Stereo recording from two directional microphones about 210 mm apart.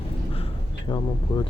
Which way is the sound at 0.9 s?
25° left (ahead or behind).